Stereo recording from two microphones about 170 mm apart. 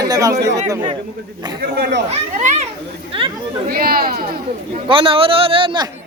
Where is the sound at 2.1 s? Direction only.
40° right (ahead or behind).